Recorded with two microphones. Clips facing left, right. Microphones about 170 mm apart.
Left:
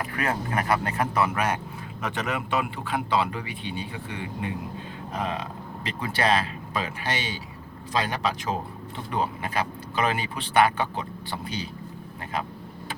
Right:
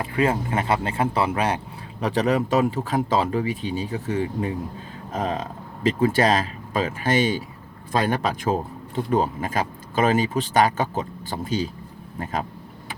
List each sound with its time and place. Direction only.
0.0 s speech: 25° right (ahead or behind); by 12.5 s 45° right (ahead or behind)